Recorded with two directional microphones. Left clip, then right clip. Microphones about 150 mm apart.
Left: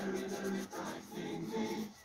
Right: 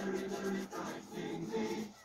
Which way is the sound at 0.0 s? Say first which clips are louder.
Right 1 dB; 25° left (ahead or behind).